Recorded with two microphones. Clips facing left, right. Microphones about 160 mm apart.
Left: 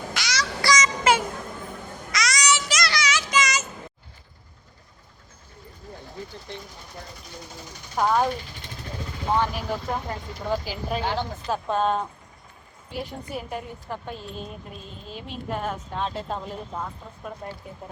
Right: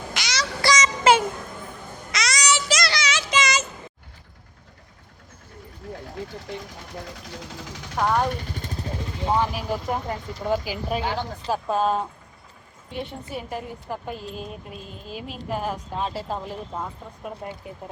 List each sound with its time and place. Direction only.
0.1 s a sound: 20° right (ahead or behind)
2.1 s child singing: 30° right (ahead or behind)
7.0 s speech: 90° right
7.9 s speech: 5° left (ahead or behind)
8.3 s vehicle: 45° right (ahead or behind)
9.3 s a woman's voice: 10° right (ahead or behind)